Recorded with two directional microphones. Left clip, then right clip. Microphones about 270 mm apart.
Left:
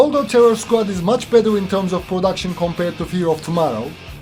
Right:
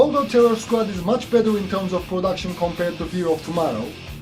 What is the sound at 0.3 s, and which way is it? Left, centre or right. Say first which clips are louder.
Speech: left 4 dB; left.